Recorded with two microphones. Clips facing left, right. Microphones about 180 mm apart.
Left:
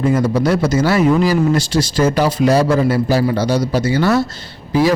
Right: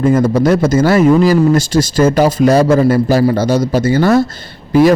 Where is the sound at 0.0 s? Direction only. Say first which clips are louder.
Right 4 dB; 50° right (ahead or behind).